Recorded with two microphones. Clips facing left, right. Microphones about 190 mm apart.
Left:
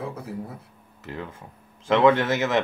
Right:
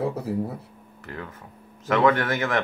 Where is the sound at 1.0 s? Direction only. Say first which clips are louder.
Left 2 dB; 20° left (ahead or behind).